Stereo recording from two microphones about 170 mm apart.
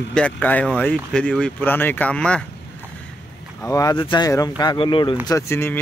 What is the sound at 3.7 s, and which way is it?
Speech, 20° left (ahead or behind).